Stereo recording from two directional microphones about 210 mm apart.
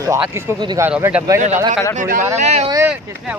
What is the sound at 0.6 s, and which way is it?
Speech, 20° right (ahead or behind).